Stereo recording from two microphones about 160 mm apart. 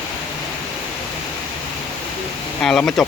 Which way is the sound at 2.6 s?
5° left (ahead or behind).